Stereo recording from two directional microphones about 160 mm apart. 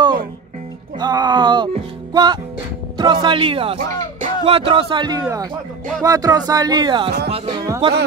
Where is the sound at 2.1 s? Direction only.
25° right (ahead or behind).